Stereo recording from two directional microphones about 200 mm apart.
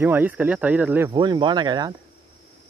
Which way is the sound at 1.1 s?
25° right (ahead or behind).